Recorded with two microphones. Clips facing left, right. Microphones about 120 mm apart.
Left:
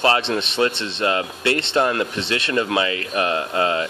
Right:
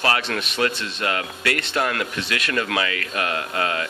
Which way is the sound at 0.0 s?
25° left (ahead or behind).